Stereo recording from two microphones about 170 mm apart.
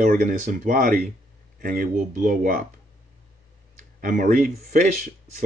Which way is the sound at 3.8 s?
50° right (ahead or behind).